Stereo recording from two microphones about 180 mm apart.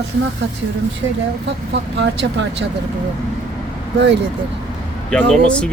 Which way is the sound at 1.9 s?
75° right (ahead or behind).